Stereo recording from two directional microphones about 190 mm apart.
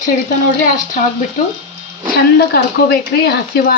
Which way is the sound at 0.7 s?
45° left (ahead or behind).